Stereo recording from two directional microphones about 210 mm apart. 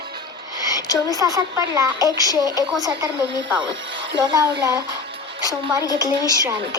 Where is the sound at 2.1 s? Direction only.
15° left (ahead or behind).